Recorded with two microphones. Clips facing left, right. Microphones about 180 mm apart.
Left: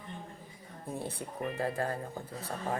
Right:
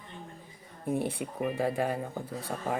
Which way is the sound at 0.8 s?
15° right (ahead or behind).